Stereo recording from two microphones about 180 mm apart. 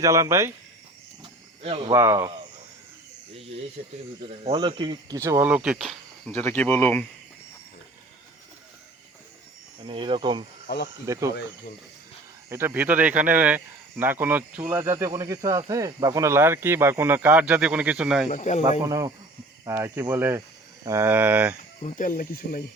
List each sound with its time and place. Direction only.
0.0 s speech: 15° right (ahead or behind)
1.2 s cricket: 30° right (ahead or behind)
1.9 s speech: 15° right (ahead or behind)
3.8 s speech: 45° right (ahead or behind)
4.5 s speech: 25° right (ahead or behind); by 7.0 s 10° left (ahead or behind)
9.8 s speech: 30° right (ahead or behind)
12.5 s speech: 15° right (ahead or behind)
18.3 s speech: 40° left (ahead or behind)
18.9 s speech: 20° right (ahead or behind)
21.8 s speech: 40° left (ahead or behind)